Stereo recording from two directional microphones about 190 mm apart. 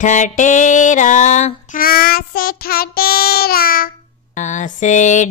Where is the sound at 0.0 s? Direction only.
40° left (ahead or behind).